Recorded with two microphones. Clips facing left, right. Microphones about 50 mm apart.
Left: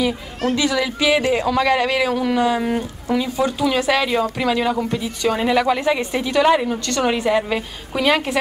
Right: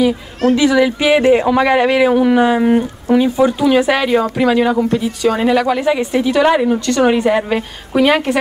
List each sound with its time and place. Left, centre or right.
0.5 s a woman's voice: centre